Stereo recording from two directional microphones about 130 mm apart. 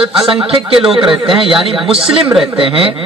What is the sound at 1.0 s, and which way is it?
Speech, 40° right (ahead or behind).